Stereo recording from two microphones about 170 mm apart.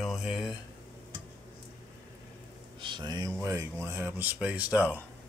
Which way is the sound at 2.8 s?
25° right (ahead or behind).